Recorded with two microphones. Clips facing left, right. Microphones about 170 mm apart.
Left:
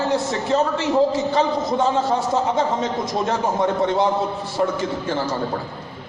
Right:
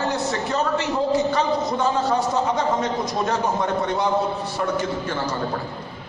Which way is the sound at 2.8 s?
25° left (ahead or behind).